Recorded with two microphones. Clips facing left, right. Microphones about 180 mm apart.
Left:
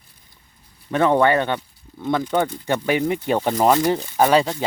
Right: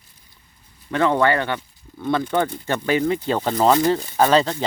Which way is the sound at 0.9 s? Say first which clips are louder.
Left 2 dB; 15° left (ahead or behind).